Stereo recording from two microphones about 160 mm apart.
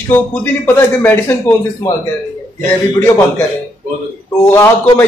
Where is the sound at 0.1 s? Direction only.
15° left (ahead or behind).